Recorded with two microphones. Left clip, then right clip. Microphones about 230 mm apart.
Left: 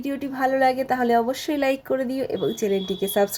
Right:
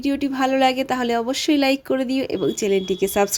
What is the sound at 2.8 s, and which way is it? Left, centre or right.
Speech, right.